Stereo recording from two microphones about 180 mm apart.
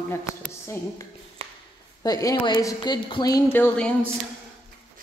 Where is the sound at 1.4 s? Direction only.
35° right (ahead or behind).